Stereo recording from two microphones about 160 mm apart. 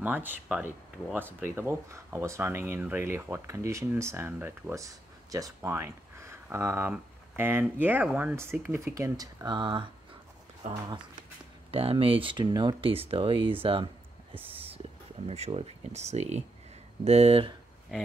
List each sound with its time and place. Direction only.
0.0 s speech: 10° right (ahead or behind); by 9.8 s 30° right (ahead or behind)
10.6 s speech: 50° right (ahead or behind)
11.7 s speech: 35° right (ahead or behind)
14.4 s a sound: 35° right (ahead or behind)
15.2 s speech: 40° right (ahead or behind)